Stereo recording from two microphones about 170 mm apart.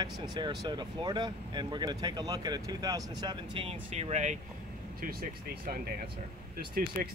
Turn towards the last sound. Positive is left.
turn(degrees=-55)  # may be behind; listen again after turning